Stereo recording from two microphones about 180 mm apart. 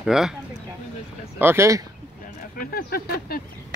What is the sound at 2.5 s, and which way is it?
Speech, 55° left (ahead or behind).